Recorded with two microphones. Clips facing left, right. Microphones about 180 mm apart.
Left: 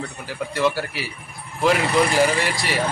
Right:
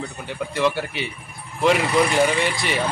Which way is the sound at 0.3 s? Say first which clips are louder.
Even; centre (ahead or behind).